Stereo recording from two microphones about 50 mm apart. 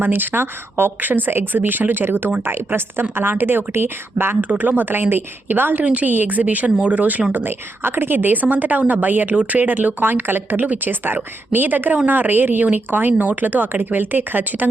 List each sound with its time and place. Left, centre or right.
0.0 s a woman's voice: right
4.4 s a woman's voice: right
5.8 s a woman's voice: right
7.3 s a woman's voice: right
9.3 s speech: right
9.6 s a woman's voice: right